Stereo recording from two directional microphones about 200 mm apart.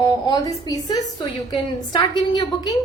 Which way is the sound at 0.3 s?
20° left (ahead or behind).